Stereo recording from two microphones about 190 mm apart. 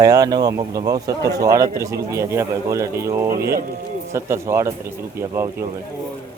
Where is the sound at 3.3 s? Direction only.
50° right (ahead or behind).